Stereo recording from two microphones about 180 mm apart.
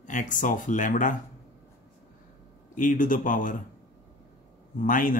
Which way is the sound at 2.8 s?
50° left (ahead or behind).